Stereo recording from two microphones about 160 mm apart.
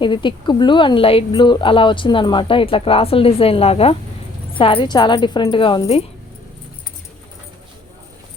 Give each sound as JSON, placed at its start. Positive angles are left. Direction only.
{"t": 0.0, "sound": "a woman's voice", "side_deg": 30}